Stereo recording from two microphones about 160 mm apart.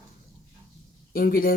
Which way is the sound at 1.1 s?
65° left (ahead or behind).